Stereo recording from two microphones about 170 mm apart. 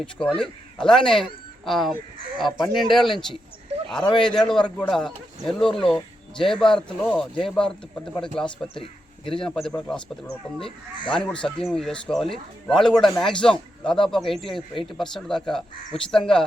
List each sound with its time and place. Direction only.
0.0 s speech: 5° left (ahead or behind)
8.8 s a sound: 30° left (ahead or behind)
9.4 s speech: 5° left (ahead or behind)
10.9 s speech: 30° left (ahead or behind)
11.2 s speech: 5° left (ahead or behind)